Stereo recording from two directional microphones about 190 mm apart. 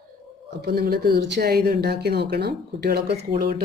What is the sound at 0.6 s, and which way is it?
Speech, 60° right (ahead or behind).